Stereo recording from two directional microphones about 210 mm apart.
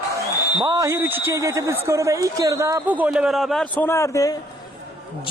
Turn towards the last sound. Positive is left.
turn(degrees=15)  # may be behind; listen again after turning